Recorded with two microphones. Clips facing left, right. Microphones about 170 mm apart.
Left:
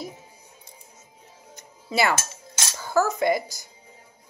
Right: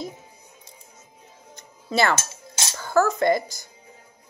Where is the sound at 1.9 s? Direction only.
10° left (ahead or behind).